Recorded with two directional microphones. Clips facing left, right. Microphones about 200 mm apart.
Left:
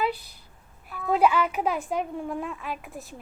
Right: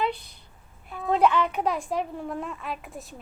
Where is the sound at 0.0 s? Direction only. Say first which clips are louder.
Even; 5° left (ahead or behind).